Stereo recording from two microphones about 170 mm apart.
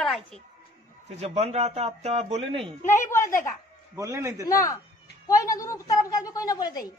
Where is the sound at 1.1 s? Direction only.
40° right (ahead or behind).